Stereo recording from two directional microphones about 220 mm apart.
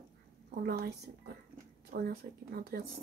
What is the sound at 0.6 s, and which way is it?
Speech, 45° right (ahead or behind).